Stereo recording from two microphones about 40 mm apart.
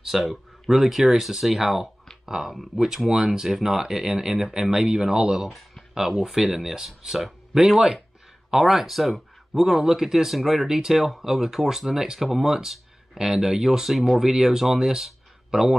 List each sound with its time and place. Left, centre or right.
0.0 s speech: centre